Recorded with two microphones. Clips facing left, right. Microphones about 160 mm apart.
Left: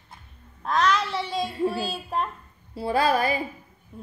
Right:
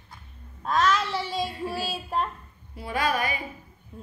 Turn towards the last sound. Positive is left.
turn(degrees=0)  # may be behind; listen again after turning